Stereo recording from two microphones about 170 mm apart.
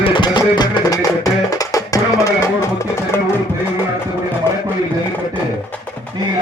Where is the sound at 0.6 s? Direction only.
20° left (ahead or behind).